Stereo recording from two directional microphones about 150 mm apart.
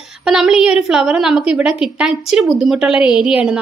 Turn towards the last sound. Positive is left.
turn(degrees=-5)  # may be behind; listen again after turning